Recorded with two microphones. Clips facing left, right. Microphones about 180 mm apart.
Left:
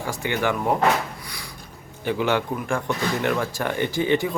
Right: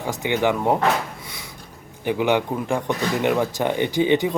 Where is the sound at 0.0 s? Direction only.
20° right (ahead or behind).